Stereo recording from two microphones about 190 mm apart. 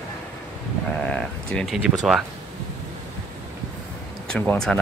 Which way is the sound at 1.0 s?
5° left (ahead or behind).